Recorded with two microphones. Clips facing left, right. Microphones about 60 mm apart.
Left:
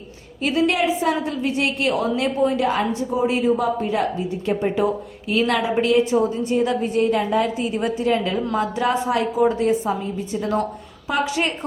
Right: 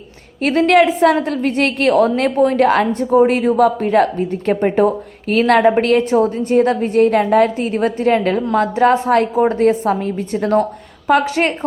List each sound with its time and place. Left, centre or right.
0.4 s a woman's voice: right